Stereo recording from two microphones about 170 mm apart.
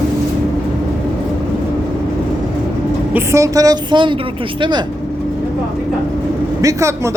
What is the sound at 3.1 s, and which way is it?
A woman's voice, 15° right (ahead or behind).